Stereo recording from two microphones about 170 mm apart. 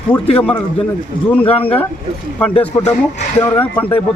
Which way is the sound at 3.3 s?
10° left (ahead or behind).